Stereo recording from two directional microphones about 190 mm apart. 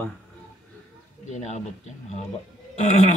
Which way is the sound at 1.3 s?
40° left (ahead or behind).